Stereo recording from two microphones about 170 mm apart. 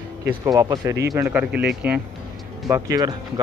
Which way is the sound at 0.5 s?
20° right (ahead or behind).